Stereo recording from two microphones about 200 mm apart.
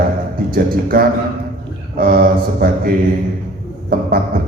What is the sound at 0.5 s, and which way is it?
A man's voice, 45° right (ahead or behind).